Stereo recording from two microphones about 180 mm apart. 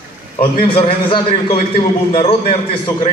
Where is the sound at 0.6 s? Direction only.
30° left (ahead or behind).